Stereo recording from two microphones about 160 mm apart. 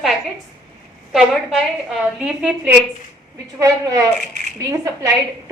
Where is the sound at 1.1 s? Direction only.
Centre (ahead or behind).